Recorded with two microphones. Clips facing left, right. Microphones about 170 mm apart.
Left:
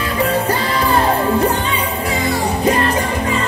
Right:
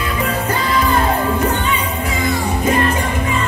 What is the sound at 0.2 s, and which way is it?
Music, 35° left (ahead or behind).